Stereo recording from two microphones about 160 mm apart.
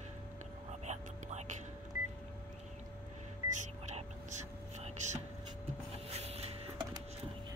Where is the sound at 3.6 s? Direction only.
45° right (ahead or behind).